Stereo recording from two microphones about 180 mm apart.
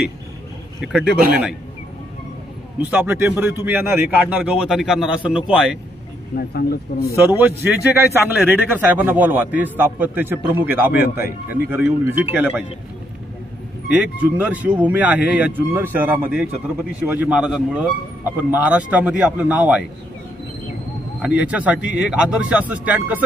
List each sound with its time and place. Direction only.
0.7 s a man's voice: 5° right (ahead or behind)
2.8 s a man's voice: 10° right (ahead or behind)
6.3 s speech: 60° left (ahead or behind)
7.2 s a man's voice: 10° right (ahead or behind)
13.9 s a man's voice: 5° right (ahead or behind)
21.2 s a man's voice: 5° right (ahead or behind)